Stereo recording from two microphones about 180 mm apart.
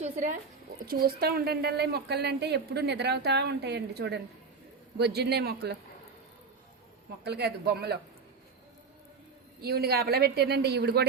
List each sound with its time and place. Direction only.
0.0 s a woman's voice: 45° right (ahead or behind)
0.9 s a woman's voice: 60° right (ahead or behind)
7.3 s a woman's voice: 65° right (ahead or behind)
9.6 s a woman's voice: 60° right (ahead or behind)